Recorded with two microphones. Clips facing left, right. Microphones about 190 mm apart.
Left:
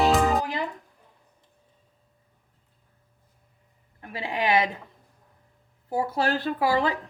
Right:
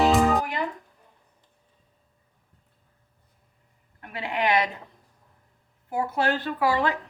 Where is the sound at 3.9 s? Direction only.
30° left (ahead or behind).